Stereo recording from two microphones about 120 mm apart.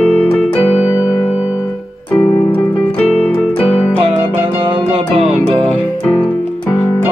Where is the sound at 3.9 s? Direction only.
50° right (ahead or behind).